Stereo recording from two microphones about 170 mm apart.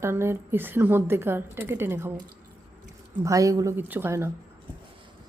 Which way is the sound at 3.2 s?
20° right (ahead or behind).